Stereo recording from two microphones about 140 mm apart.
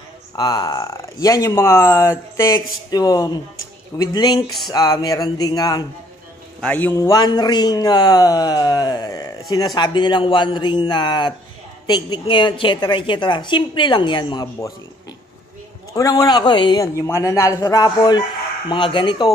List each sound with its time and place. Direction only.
0.4 s speech: 25° left (ahead or behind)
6.6 s a man's voice: 10° left (ahead or behind)
7.0 s a woman's voice: 25° left (ahead or behind)
15.9 s speech: 25° left (ahead or behind)
16.8 s a woman's voice: 20° left (ahead or behind)